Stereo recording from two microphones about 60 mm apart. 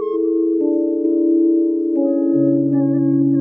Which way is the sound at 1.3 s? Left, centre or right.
Centre.